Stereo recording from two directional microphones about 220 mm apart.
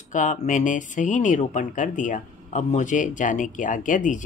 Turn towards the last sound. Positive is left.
turn(degrees=35)  # may be behind; listen again after turning